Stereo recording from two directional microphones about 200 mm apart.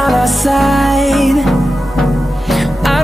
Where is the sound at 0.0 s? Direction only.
Centre (ahead or behind).